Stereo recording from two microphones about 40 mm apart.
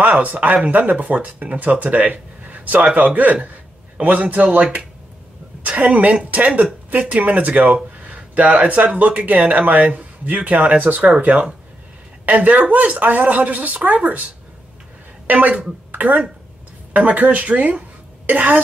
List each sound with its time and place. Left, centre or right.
0.2 s speech: right
4.0 s speech: right
5.6 s a woman's voice: right
15.2 s speech: right